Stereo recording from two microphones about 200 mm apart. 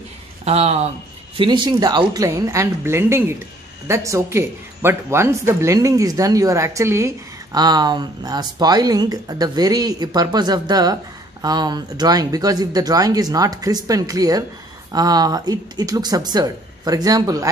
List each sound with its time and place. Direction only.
0.5 s speech: 30° right (ahead or behind)